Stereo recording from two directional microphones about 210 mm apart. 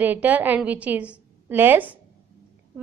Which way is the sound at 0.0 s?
10° right (ahead or behind).